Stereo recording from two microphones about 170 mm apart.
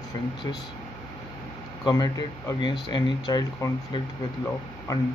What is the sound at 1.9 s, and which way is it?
Speech, 25° left (ahead or behind).